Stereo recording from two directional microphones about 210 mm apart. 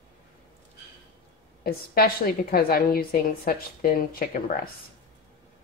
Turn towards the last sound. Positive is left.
turn(degrees=45)  # may be behind; listen again after turning